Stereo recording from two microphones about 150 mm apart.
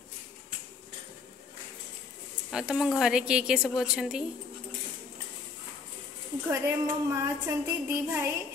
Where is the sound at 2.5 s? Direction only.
5° right (ahead or behind).